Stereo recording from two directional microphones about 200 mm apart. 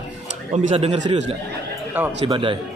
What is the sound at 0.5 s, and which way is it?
Speech, 35° right (ahead or behind).